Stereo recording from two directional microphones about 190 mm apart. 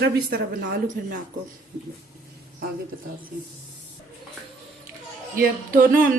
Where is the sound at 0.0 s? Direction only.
60° right (ahead or behind).